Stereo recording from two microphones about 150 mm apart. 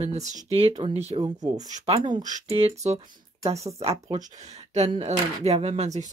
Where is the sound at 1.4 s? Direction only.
25° right (ahead or behind).